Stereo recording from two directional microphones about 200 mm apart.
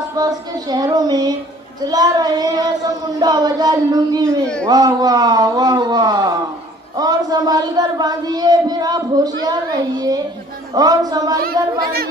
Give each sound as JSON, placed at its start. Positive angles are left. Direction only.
{"t": 0.2, "sound": "speech", "side_deg": -20}
{"t": 11.8, "sound": "speech", "side_deg": -50}